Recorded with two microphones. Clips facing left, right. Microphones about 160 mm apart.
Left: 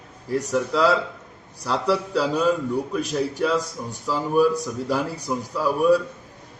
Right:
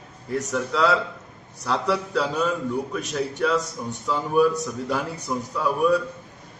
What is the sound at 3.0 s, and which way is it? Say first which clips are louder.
Speech: left 3 dB; 35° left (ahead or behind).